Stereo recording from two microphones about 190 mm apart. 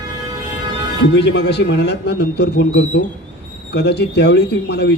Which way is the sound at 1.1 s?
65° left (ahead or behind).